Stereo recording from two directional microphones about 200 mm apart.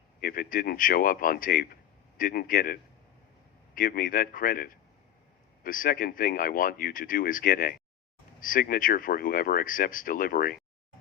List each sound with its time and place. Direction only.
0.2 s speech: 45° left (ahead or behind)
3.8 s speech: 45° left (ahead or behind)